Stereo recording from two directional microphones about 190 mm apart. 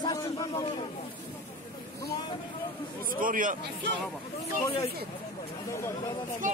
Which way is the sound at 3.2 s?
45° right (ahead or behind).